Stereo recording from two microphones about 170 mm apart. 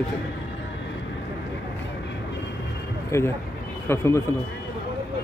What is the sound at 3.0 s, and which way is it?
Speech, 15° left (ahead or behind).